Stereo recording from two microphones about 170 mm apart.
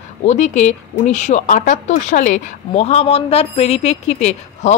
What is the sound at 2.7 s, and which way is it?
A woman's voice, 35° left (ahead or behind).